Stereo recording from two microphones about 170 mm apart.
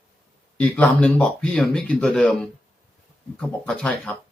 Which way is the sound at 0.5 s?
10° left (ahead or behind).